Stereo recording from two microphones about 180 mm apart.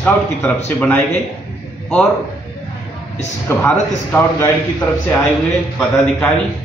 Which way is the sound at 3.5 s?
10° left (ahead or behind).